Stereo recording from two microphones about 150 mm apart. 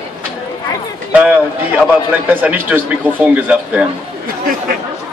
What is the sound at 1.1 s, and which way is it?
A man's voice, 10° right (ahead or behind).